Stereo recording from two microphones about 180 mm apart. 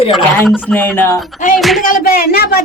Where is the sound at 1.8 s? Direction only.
45° left (ahead or behind).